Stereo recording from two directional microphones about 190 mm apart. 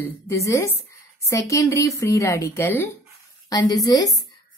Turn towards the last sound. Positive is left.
turn(degrees=20)  # may be behind; listen again after turning